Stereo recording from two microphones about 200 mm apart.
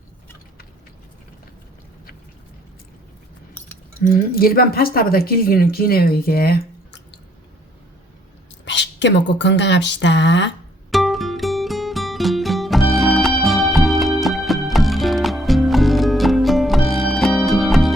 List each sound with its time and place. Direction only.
4.1 s speech: 50° left (ahead or behind)
8.6 s speech: 65° left (ahead or behind)
10.9 s music: centre (ahead or behind)